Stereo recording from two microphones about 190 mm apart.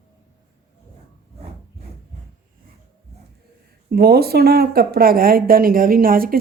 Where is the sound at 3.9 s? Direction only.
55° right (ahead or behind).